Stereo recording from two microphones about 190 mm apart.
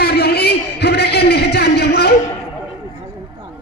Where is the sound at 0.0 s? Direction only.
60° left (ahead or behind).